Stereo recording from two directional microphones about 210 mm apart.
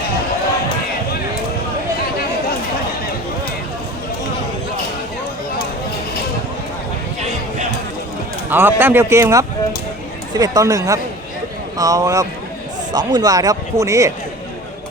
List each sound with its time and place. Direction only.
8.4 s speech: 10° right (ahead or behind)